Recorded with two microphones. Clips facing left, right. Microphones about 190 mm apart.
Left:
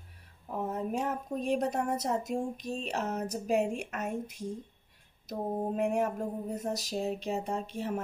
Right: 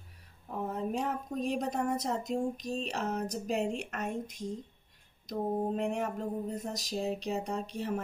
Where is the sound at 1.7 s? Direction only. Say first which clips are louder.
Left 1 dB; 5° left (ahead or behind).